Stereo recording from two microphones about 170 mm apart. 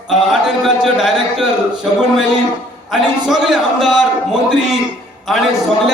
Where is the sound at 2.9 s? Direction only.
Centre (ahead or behind).